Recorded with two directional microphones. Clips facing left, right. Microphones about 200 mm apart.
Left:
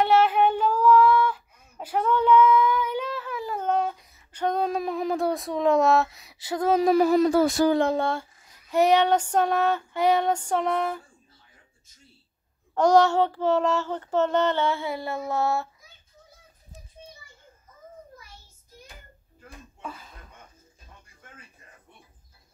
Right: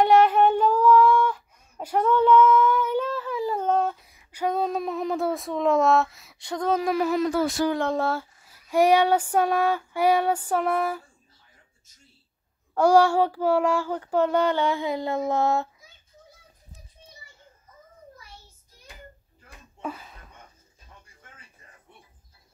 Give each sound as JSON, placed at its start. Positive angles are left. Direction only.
{"t": 0.0, "sound": "female singing", "side_deg": 5}
{"t": 2.5, "sound": "a sound", "side_deg": 10}
{"t": 4.1, "sound": "speech", "side_deg": -10}
{"t": 6.9, "sound": "speech", "side_deg": 35}
{"t": 7.9, "sound": "female singing", "side_deg": -5}
{"t": 12.7, "sound": "female singing", "side_deg": -10}